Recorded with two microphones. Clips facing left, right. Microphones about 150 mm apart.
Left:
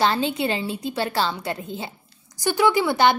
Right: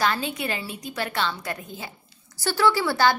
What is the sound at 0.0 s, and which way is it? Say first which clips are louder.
A woman's voice: left 4 dB; 30° left (ahead or behind).